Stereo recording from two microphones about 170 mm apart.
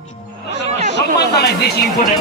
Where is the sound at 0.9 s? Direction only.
80° left.